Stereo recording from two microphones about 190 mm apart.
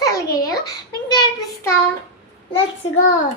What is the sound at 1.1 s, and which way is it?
Child singing, 20° left (ahead or behind).